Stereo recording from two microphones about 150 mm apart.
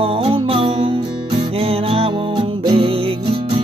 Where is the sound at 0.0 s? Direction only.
40° right (ahead or behind).